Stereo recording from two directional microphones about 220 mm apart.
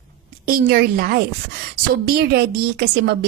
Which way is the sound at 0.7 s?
45° right (ahead or behind).